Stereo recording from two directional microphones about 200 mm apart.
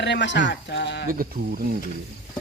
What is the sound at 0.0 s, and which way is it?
Speech, 60° left (ahead or behind).